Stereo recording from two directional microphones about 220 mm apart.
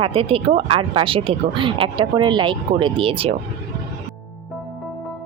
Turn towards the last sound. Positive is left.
turn(degrees=-25)  # may be behind; listen again after turning